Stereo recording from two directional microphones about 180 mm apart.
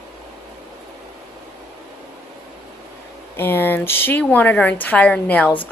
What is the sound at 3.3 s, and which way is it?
Speech, 10° left (ahead or behind).